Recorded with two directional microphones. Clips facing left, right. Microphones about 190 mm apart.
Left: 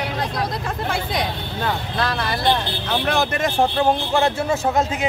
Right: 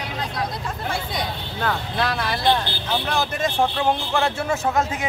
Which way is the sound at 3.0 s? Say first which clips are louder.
Left 4 dB; 65° left (ahead or behind).